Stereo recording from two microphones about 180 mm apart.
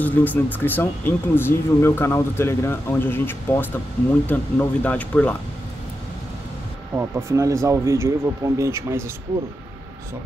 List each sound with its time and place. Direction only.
0.0 s speech: 10° left (ahead or behind)
7.0 s speech: 15° right (ahead or behind)